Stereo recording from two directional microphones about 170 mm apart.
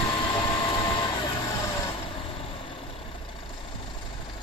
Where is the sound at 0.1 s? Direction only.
30° left (ahead or behind).